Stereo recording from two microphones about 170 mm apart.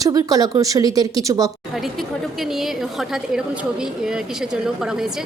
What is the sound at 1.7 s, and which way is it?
A woman's voice, centre (ahead or behind).